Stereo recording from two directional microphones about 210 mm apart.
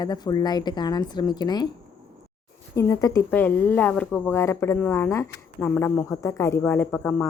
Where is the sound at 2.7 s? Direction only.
15° left (ahead or behind).